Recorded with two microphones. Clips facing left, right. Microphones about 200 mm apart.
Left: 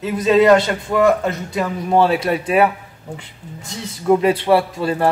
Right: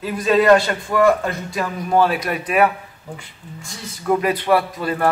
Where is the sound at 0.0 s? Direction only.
20° left (ahead or behind).